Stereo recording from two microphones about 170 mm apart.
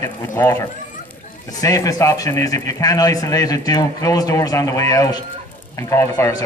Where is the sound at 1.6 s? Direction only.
20° left (ahead or behind).